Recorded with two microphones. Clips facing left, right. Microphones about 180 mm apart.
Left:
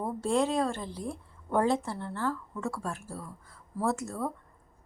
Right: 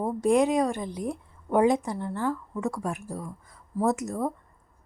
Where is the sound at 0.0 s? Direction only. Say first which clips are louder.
Right 6 dB; 15° right (ahead or behind).